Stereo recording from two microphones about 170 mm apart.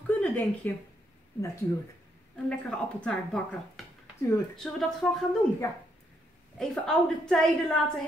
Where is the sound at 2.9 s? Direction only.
5° left (ahead or behind).